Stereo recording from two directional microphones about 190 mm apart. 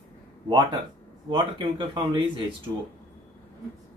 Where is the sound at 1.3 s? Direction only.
25° right (ahead or behind).